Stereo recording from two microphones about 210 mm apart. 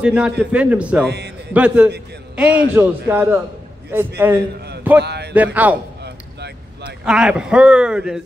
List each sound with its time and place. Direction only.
0.0 s a man's voice: 5° right (ahead or behind)
1.0 s speech: 50° right (ahead or behind)
1.5 s a man's voice: 5° right (ahead or behind)
5.0 s speech: 50° right (ahead or behind)
5.3 s a man's voice: 5° right (ahead or behind)
7.1 s a man's voice: 5° right (ahead or behind)